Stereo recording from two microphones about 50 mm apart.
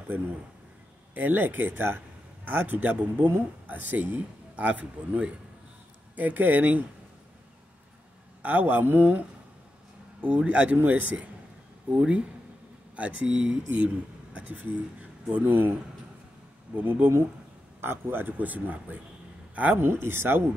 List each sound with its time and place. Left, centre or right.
0.1 s a man's voice: right
8.4 s a man's voice: right
10.2 s speech: right
11.9 s speech: right
14.3 s speech: right
15.4 s speech: right
16.7 s a man's voice: right
19.8 s speech: right